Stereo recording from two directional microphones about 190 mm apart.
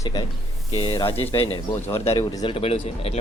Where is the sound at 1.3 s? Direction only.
30° left (ahead or behind).